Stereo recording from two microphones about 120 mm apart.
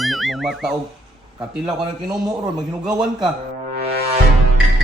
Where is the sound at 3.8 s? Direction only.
60° right (ahead or behind).